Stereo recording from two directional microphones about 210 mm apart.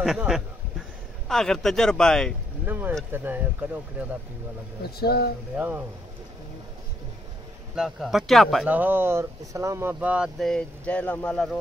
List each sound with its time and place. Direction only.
0.0 s a sound: centre (ahead or behind)
1.3 s speech: centre (ahead or behind)
2.6 s speech: 10° right (ahead or behind)
4.8 s speech: 50° left (ahead or behind)
5.6 s speech: 10° right (ahead or behind)
7.7 s speech: centre (ahead or behind)